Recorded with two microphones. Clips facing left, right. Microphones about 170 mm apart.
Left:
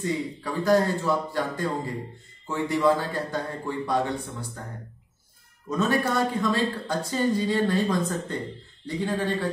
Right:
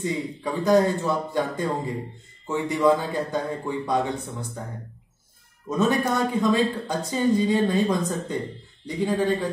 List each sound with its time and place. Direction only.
0.0 s speech: 20° right (ahead or behind)
5.7 s a woman's voice: 20° right (ahead or behind)